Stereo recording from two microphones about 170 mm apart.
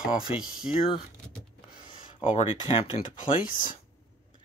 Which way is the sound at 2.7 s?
35° left (ahead or behind).